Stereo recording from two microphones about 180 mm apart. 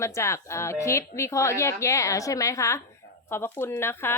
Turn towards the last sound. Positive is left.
turn(degrees=15)  # may be behind; listen again after turning